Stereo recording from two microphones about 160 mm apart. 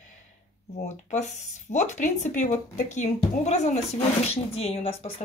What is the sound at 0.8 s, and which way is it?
A woman's voice, 45° left (ahead or behind).